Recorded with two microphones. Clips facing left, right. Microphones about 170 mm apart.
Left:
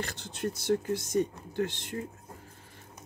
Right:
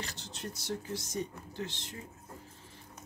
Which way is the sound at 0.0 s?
55° left (ahead or behind).